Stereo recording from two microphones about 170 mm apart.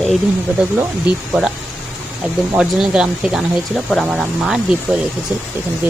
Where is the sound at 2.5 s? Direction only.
5° right (ahead or behind).